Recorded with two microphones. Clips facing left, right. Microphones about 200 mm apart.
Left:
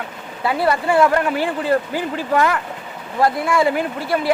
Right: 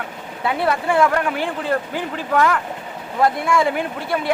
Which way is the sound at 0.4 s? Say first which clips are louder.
Left 2 dB; centre (ahead or behind).